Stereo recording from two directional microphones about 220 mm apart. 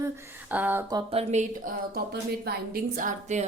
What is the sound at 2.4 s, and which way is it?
Speech, 40° right (ahead or behind).